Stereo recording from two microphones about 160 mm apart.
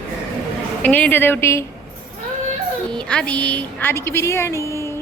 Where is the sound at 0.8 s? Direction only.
10° left (ahead or behind).